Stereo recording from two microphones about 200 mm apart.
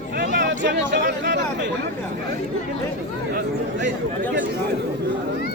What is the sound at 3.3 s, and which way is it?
Speech, 60° right (ahead or behind).